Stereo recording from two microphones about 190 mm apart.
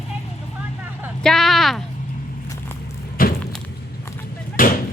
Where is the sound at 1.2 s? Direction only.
Centre (ahead or behind).